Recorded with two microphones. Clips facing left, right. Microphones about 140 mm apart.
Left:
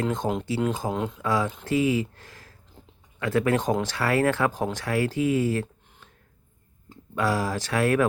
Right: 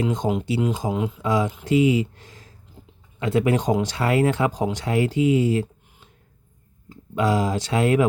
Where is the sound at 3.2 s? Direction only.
20° right (ahead or behind).